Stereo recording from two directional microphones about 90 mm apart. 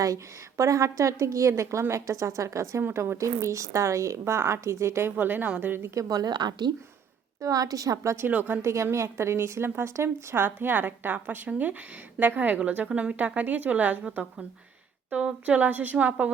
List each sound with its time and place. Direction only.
0.0 s a woman's voice: 35° right (ahead or behind)
5.9 s a woman's voice: 40° right (ahead or behind)
7.4 s a woman's voice: 40° right (ahead or behind)
8.3 s a woman's voice: 20° right (ahead or behind)
8.7 s a woman's voice: 35° right (ahead or behind); by 16.3 s 15° right (ahead or behind)